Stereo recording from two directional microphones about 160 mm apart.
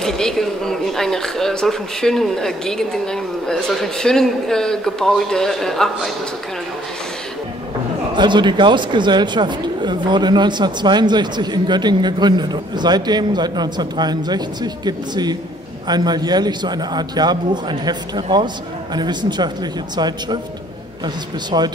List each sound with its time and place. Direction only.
0.0 s speech: 5° left (ahead or behind)
8.1 s speech: 30° right (ahead or behind)